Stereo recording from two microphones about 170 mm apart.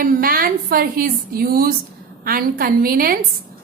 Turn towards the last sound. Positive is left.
turn(degrees=-60)  # may be behind; listen again after turning